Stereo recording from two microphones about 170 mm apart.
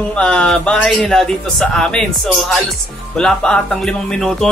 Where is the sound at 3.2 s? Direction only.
5° left (ahead or behind).